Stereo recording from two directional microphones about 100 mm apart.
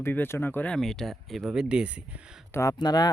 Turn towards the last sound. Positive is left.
turn(degrees=40)  # may be behind; listen again after turning